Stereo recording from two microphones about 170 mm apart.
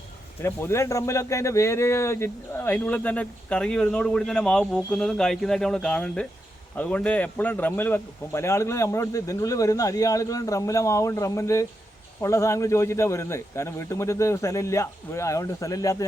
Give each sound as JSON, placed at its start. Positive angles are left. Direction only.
{"t": 0.4, "sound": "speech", "side_deg": 15}